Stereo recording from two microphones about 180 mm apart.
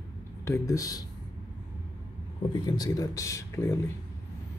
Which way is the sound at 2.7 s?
20° left (ahead or behind).